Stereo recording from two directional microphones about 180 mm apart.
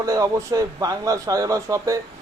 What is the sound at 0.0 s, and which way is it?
Speech, 20° right (ahead or behind).